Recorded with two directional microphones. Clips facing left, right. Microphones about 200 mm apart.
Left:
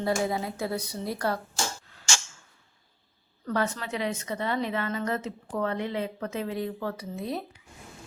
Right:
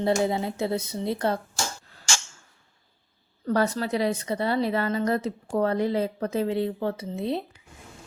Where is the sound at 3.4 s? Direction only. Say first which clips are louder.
Right 5 dB; 35° right (ahead or behind).